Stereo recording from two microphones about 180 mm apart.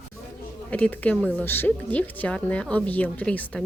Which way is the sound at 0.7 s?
10° left (ahead or behind).